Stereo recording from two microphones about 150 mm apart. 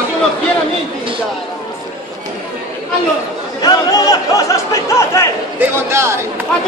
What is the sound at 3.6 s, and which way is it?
Speech, 25° left (ahead or behind).